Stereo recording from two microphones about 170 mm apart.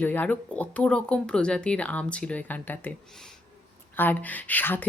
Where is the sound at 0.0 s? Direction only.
10° left (ahead or behind).